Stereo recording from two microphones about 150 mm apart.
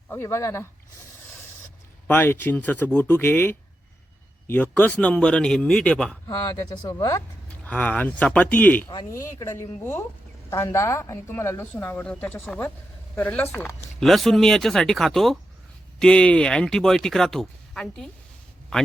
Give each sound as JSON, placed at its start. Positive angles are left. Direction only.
{"t": 0.1, "sound": "a woman's voice", "side_deg": 15}
{"t": 2.0, "sound": "a woman's voice", "side_deg": 15}
{"t": 6.2, "sound": "speech", "side_deg": 25}
{"t": 7.6, "sound": "a woman's voice", "side_deg": 10}
{"t": 14.0, "sound": "speech", "side_deg": 0}